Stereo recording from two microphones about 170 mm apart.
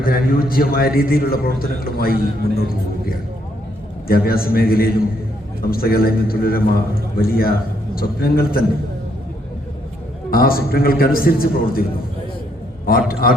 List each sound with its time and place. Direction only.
0.0 s a man's voice: 60° left (ahead or behind)
10.3 s a man's voice: 60° left (ahead or behind)
12.9 s a man's voice: 60° left (ahead or behind)